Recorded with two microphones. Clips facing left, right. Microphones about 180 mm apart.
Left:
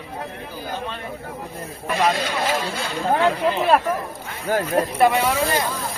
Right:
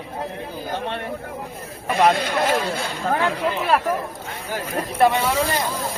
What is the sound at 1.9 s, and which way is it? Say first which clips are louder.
Speech: right 3 dB; 55° right (ahead or behind).